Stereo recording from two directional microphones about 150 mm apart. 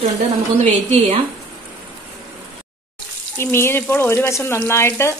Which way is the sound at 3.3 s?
15° left (ahead or behind).